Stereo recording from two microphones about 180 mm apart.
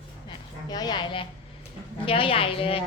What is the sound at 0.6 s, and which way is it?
A woman's voice, 20° left (ahead or behind).